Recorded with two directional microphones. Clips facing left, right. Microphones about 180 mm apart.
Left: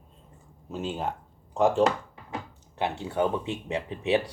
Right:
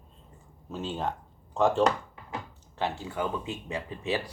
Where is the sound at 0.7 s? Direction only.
10° left (ahead or behind).